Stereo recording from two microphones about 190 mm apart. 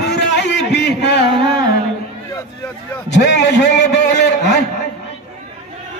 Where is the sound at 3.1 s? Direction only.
65° left (ahead or behind).